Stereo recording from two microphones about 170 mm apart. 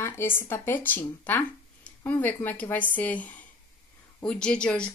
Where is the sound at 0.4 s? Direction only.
15° left (ahead or behind).